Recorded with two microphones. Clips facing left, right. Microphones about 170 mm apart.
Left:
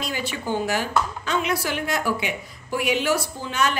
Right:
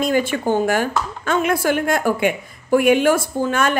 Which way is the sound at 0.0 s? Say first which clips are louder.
Right 10 dB; 50° right (ahead or behind).